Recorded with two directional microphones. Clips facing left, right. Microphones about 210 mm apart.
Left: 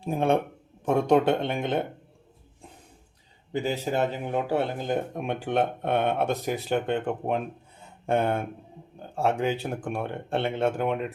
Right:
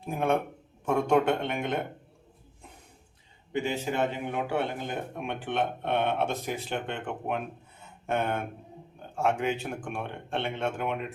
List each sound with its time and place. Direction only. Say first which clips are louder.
0.0 s speech: left 3 dB; 30° left (ahead or behind)
3.5 s speech: left 2 dB; 35° left (ahead or behind)